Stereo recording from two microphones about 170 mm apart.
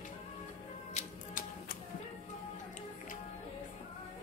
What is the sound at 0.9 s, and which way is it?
Music, 40° left (ahead or behind).